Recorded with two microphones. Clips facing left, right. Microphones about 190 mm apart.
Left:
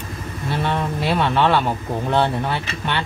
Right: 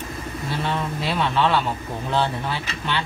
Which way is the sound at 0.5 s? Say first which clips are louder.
Left 4 dB; 60° left (ahead or behind).